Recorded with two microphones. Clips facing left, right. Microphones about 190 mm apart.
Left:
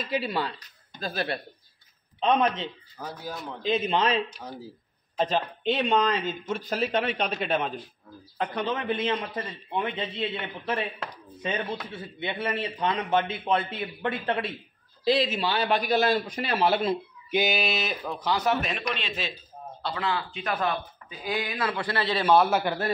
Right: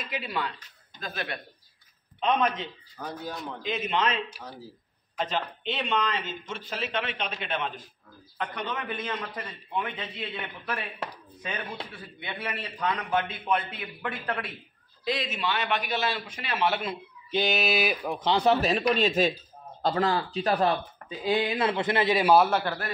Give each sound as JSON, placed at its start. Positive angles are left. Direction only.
{"t": 0.0, "sound": "a man's voice", "side_deg": 30}
{"t": 3.0, "sound": "speech", "side_deg": 0}
{"t": 3.6, "sound": "a man's voice", "side_deg": 30}
{"t": 8.4, "sound": "a man's voice", "side_deg": 30}
{"t": 11.9, "sound": "a man's voice", "side_deg": 25}
{"t": 17.3, "sound": "a sound", "side_deg": 10}
{"t": 17.6, "sound": "speech", "side_deg": -5}
{"t": 18.2, "sound": "speech", "side_deg": -30}
{"t": 22.3, "sound": "speech", "side_deg": -5}